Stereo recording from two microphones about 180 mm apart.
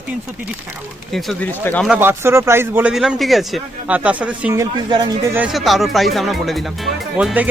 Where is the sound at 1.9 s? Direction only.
10° right (ahead or behind).